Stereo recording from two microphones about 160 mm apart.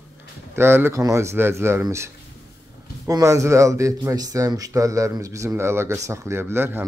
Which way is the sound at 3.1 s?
20° right (ahead or behind).